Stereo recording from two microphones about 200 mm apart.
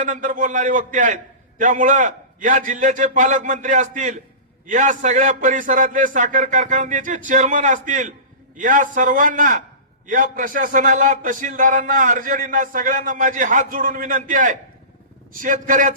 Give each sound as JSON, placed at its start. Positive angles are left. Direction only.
{"t": 0.0, "sound": "a man's voice", "side_deg": -40}